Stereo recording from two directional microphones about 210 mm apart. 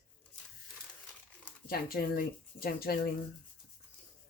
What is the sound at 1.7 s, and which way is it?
Speech, 45° left (ahead or behind).